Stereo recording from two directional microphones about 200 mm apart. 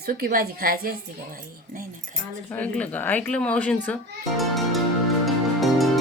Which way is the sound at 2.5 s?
5° left (ahead or behind).